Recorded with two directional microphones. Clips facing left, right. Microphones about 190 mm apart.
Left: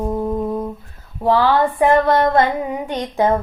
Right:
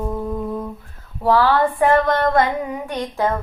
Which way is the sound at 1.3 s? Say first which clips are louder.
Left 1 dB; 20° left (ahead or behind).